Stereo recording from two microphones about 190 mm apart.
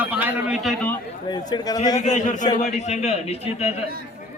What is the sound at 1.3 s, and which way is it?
Speech, 20° left (ahead or behind).